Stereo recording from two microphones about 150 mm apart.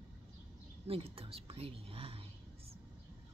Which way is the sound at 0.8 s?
40° right (ahead or behind).